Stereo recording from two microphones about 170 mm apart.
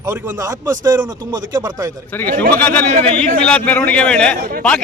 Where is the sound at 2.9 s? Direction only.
50° right (ahead or behind).